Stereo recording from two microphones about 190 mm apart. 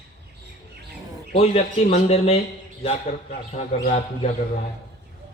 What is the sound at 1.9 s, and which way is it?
Speech, 30° left (ahead or behind).